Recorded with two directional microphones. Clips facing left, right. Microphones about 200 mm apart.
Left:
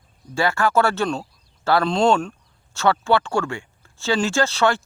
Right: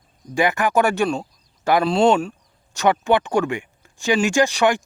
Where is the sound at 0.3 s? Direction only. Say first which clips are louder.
Right 1 dB; 15° right (ahead or behind).